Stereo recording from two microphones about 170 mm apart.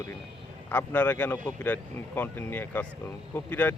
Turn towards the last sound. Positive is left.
turn(degrees=10)  # may be behind; listen again after turning